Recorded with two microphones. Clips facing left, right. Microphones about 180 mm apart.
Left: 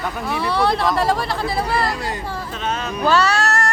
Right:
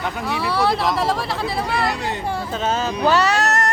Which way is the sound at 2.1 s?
25° right (ahead or behind).